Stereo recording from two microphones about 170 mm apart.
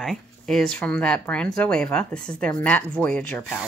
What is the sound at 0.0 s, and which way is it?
Speech, centre (ahead or behind).